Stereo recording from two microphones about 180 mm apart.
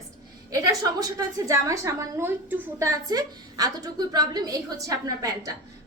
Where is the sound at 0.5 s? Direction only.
20° right (ahead or behind).